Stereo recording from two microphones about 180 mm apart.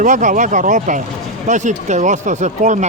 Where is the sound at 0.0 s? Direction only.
45° right (ahead or behind).